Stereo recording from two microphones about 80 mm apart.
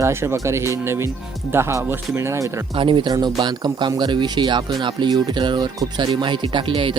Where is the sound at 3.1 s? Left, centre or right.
Right.